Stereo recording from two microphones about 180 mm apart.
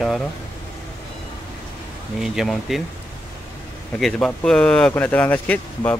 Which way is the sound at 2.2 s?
Centre (ahead or behind).